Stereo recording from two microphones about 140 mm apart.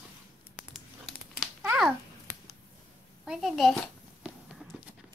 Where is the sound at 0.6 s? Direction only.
Centre (ahead or behind).